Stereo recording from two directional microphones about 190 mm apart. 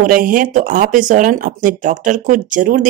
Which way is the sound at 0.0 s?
45° right (ahead or behind).